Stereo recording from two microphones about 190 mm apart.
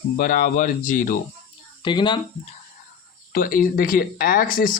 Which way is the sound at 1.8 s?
25° left (ahead or behind).